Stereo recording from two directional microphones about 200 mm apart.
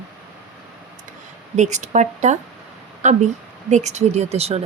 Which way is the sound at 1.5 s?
35° right (ahead or behind).